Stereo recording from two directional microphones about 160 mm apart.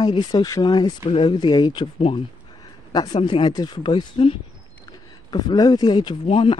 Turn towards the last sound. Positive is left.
turn(degrees=35)  # may be behind; listen again after turning